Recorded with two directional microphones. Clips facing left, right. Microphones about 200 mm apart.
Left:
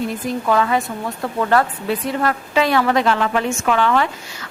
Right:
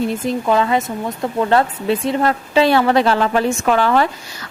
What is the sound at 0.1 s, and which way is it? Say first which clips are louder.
A woman's voice: right 2 dB; 25° right (ahead or behind).